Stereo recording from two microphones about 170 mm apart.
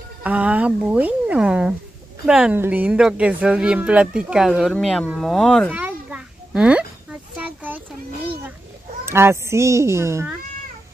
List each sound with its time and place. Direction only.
0.2 s speech: 10° right (ahead or behind)
5.7 s a sound: 10° right (ahead or behind)
9.0 s speech: 15° right (ahead or behind)